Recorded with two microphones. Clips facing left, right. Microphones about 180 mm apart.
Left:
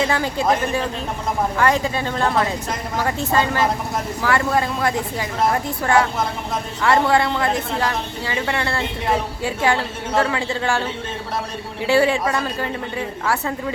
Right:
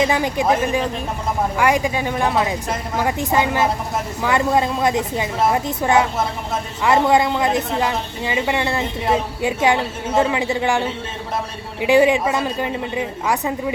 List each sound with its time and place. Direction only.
0.0 s a woman's voice: 15° right (ahead or behind)